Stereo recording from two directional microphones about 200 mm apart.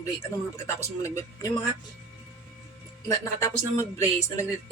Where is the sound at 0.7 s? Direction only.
15° left (ahead or behind).